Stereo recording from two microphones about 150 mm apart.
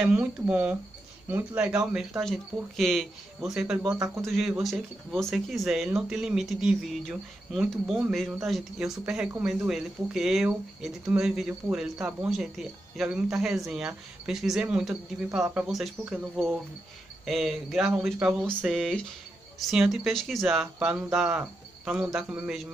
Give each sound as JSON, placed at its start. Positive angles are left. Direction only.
{"t": 0.0, "sound": "speech", "side_deg": -10}
{"t": 3.8, "sound": "speech", "side_deg": -20}
{"t": 4.2, "sound": "speech", "side_deg": 0}
{"t": 17.3, "sound": "speech", "side_deg": 0}